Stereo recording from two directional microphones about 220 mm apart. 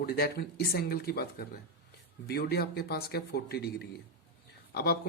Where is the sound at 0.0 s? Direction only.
45° left (ahead or behind).